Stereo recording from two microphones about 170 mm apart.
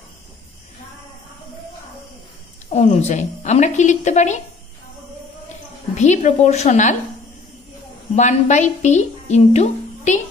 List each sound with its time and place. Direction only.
2.7 s a woman's voice: 40° left (ahead or behind)
5.9 s a woman's voice: 45° left (ahead or behind)
8.2 s a woman's voice: 45° left (ahead or behind)